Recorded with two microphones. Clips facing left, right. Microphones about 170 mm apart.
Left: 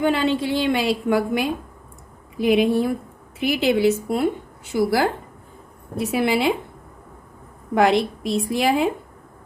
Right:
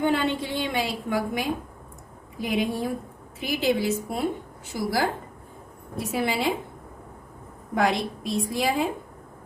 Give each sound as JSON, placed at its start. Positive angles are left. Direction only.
{"t": 0.0, "sound": "a woman's voice", "side_deg": 90}
{"t": 7.8, "sound": "a woman's voice", "side_deg": 75}